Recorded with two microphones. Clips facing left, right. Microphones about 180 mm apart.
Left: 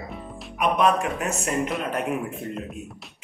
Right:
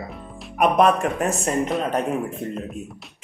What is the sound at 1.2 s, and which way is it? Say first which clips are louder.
Speech: right 4 dB; 35° right (ahead or behind).